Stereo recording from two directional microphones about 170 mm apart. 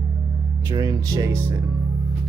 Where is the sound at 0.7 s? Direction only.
20° right (ahead or behind).